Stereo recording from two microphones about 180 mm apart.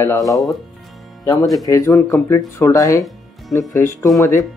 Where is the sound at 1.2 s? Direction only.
15° left (ahead or behind).